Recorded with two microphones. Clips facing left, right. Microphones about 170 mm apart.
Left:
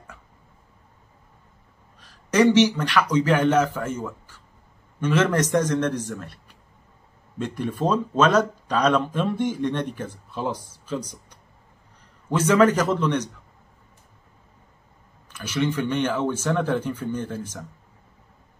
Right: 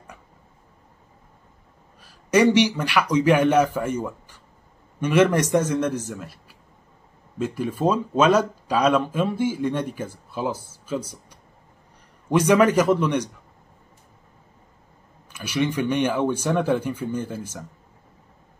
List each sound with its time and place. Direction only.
2.0 s speech: 10° right (ahead or behind)
15.3 s speech: 10° right (ahead or behind)